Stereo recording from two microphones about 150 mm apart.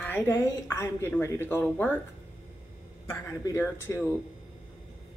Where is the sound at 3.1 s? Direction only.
20° left (ahead or behind).